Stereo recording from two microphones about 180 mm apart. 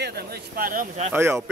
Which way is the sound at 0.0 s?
60° right (ahead or behind).